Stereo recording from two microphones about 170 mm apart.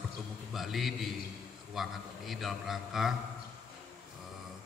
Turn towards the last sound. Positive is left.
turn(degrees=0)  # may be behind; listen again after turning